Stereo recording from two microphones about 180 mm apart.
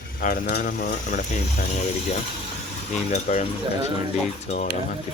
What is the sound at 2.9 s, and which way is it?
Speech, 40° left (ahead or behind).